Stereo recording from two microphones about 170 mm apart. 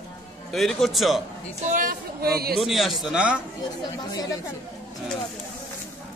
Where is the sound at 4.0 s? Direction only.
25° left (ahead or behind).